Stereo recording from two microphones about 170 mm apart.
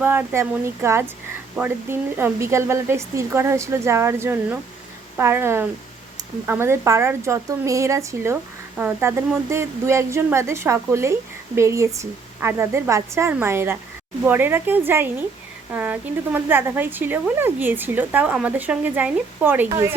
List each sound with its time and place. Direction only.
0.0 s speech: 10° right (ahead or behind)